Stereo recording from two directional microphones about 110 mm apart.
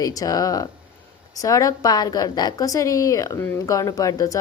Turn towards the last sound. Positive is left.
turn(degrees=30)  # may be behind; listen again after turning